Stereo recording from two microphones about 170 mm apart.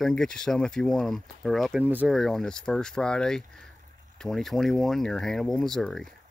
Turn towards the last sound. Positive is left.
turn(degrees=0)  # may be behind; listen again after turning